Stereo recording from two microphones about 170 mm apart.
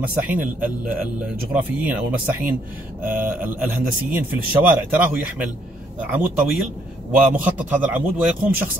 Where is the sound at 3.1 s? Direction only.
10° right (ahead or behind).